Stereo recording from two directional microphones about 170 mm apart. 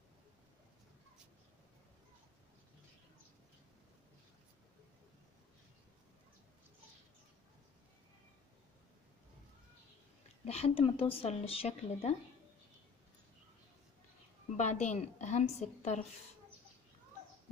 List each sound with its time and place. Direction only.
10.4 s speech: 35° left (ahead or behind)
14.6 s speech: 45° left (ahead or behind)